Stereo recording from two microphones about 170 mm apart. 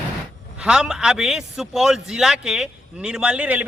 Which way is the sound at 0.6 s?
5° right (ahead or behind).